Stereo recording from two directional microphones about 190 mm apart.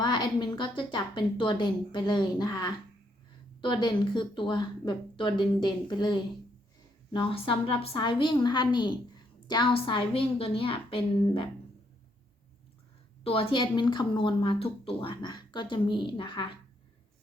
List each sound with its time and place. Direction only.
0.0 s a woman's voice: 20° left (ahead or behind)
13.2 s a woman's voice: 30° left (ahead or behind)